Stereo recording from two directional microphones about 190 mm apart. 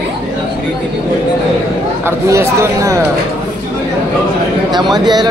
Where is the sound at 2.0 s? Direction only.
15° right (ahead or behind).